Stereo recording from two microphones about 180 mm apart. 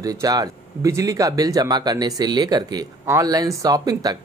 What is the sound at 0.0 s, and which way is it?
Speech, 20° right (ahead or behind).